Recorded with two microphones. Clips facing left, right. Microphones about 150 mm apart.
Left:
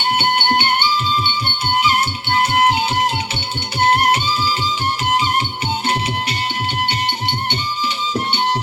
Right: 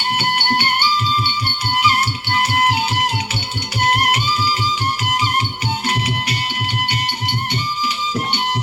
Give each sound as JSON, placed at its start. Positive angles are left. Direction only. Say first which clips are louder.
{"t": 0.2, "sound": "music", "louder": "left 1 dB", "side_deg": 25}
{"t": 5.8, "sound": "music", "louder": "left 2 dB", "side_deg": 25}